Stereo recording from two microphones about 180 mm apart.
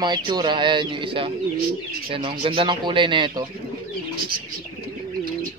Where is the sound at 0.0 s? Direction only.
25° right (ahead or behind).